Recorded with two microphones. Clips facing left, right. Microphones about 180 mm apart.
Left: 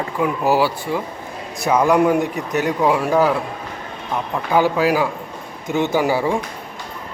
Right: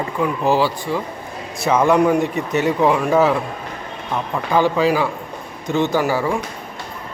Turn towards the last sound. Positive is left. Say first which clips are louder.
# left 1 dB
turn(degrees=15)  # may be behind; listen again after turning